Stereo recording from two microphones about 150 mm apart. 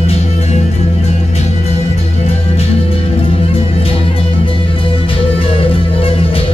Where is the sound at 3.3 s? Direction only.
40° left (ahead or behind).